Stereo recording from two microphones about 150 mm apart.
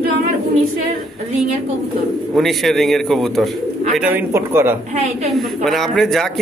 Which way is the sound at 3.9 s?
10° right (ahead or behind).